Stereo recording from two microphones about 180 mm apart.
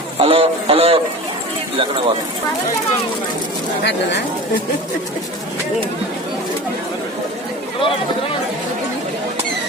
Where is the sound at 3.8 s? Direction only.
75° left (ahead or behind).